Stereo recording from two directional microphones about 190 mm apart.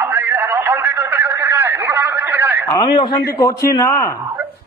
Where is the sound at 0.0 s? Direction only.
10° right (ahead or behind).